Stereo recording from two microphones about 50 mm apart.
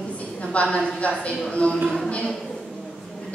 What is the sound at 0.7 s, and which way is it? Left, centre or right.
A woman's voice, left.